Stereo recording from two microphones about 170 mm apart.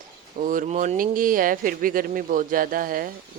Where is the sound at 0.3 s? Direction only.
50° right (ahead or behind).